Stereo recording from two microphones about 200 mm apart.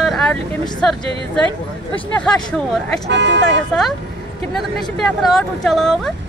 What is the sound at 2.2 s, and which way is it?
Speech, 5° left (ahead or behind).